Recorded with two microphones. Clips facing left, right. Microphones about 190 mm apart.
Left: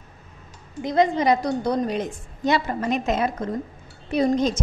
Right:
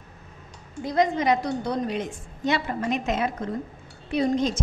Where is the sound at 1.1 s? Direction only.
35° left (ahead or behind).